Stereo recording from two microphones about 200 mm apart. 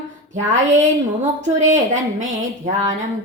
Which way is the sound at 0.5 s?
40° right (ahead or behind).